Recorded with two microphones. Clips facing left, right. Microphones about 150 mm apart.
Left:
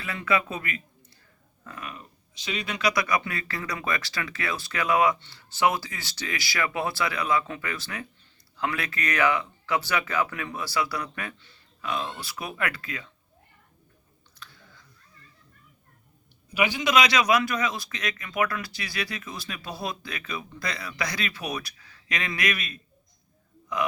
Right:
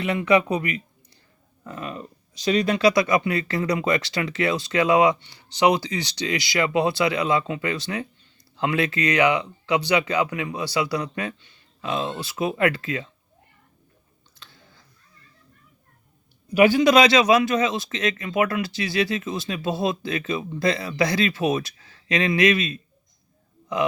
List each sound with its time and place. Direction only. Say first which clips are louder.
0.0 s speech: right 8 dB; 20° right (ahead or behind)
14.3 s chewing: left 1 dB; 25° right (ahead or behind)
16.6 s speech: right 8 dB; 40° right (ahead or behind); by 22.8 s 25° right (ahead or behind)